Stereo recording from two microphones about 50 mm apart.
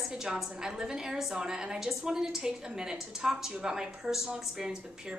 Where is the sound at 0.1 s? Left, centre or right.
Centre.